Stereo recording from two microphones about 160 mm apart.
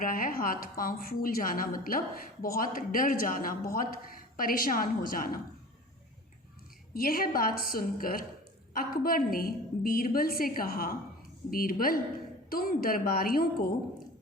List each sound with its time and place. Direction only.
0.0 s a woman's voice: 60° left (ahead or behind)
6.9 s a woman's voice: 65° left (ahead or behind)